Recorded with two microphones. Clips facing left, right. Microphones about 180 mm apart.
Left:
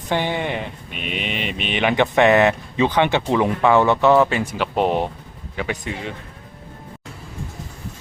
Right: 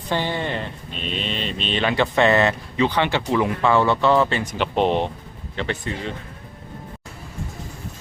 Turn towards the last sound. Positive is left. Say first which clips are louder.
# even
turn(degrees=15)  # may be behind; listen again after turning